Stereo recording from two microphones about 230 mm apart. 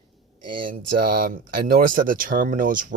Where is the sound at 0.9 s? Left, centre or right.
Right.